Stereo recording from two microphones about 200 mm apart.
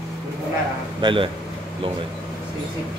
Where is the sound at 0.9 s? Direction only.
25° right (ahead or behind).